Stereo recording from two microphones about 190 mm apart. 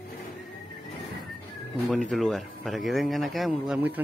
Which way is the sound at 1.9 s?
Centre (ahead or behind).